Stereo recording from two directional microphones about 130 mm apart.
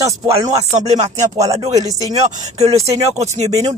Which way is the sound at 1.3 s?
25° right (ahead or behind).